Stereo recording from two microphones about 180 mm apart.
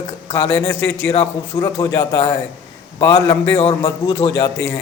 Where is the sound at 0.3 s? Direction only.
15° left (ahead or behind).